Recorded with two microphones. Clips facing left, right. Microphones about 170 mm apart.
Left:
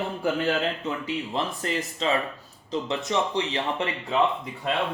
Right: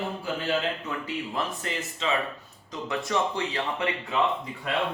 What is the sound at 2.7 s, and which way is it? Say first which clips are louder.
Speech: left 3 dB; 20° left (ahead or behind).